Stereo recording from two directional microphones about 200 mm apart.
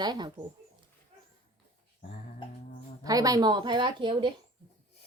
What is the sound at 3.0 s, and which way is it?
A woman's voice, 20° right (ahead or behind).